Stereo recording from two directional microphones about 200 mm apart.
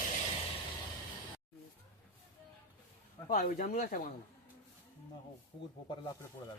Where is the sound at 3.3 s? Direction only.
40° left (ahead or behind).